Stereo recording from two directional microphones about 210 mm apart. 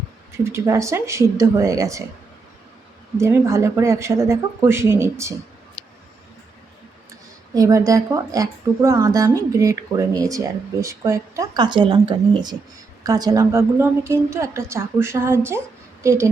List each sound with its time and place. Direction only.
0.4 s speech: 15° right (ahead or behind)
3.2 s speech: 15° right (ahead or behind)
7.5 s speech: 15° right (ahead or behind)